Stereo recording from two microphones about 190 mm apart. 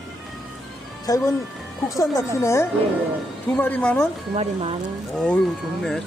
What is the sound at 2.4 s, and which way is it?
A man's voice, 15° left (ahead or behind).